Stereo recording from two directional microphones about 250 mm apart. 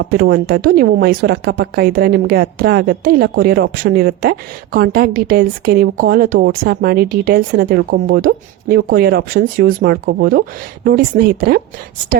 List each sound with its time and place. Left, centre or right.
0.0 s speech: right